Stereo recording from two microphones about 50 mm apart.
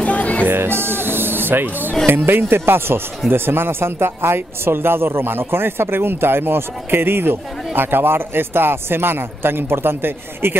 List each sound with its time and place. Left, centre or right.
0.0 s music: left
0.5 s speech: right